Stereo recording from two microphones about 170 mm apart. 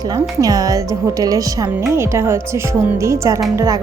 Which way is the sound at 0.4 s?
20° right (ahead or behind).